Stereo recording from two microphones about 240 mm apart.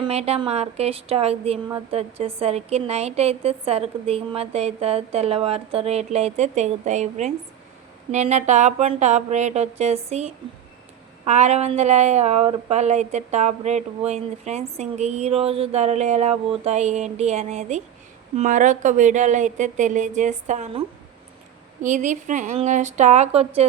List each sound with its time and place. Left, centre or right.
0.0 s speech: right
21.8 s speech: right